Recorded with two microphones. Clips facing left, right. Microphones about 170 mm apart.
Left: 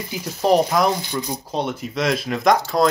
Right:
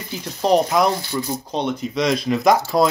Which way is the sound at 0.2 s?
Centre (ahead or behind).